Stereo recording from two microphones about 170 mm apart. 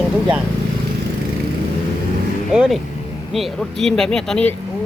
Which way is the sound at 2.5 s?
5° right (ahead or behind).